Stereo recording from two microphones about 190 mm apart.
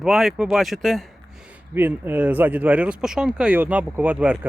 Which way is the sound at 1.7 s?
10° right (ahead or behind).